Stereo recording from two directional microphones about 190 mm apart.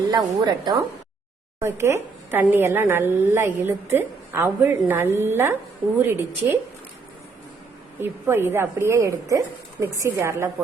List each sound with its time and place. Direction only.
0.1 s a woman's voice: 25° right (ahead or behind)
8.0 s a woman's voice: 10° right (ahead or behind)